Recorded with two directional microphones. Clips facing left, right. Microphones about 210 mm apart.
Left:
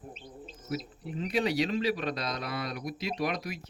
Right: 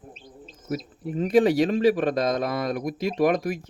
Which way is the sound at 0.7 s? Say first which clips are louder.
Right 6 dB; 45° right (ahead or behind).